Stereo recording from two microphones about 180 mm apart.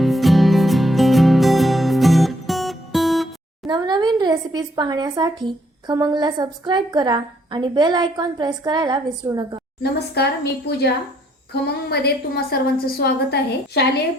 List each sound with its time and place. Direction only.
0.0 s music: centre (ahead or behind)
3.7 s a sound: 25° right (ahead or behind)
5.9 s a woman's voice: 20° right (ahead or behind)
10.2 s a woman's voice: 65° left (ahead or behind)